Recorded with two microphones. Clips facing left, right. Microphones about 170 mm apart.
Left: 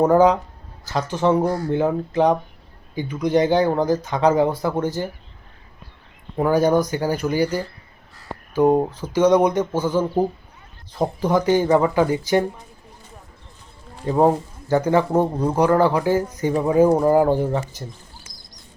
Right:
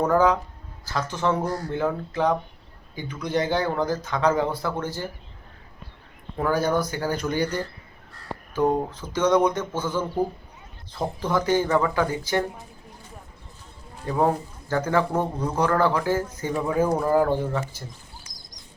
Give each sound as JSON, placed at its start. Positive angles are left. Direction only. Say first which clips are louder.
{"t": 0.0, "sound": "speech", "louder": "left 5 dB", "side_deg": 20}
{"t": 6.3, "sound": "speech", "louder": "left 6 dB", "side_deg": 15}
{"t": 14.0, "sound": "speech", "louder": "left 5 dB", "side_deg": 20}